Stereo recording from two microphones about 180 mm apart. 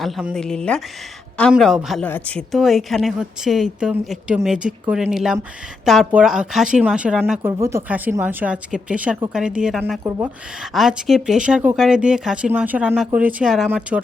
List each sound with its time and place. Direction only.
0.0 s speech: centre (ahead or behind)
10.0 s speech: 20° right (ahead or behind)
10.8 s speech: centre (ahead or behind)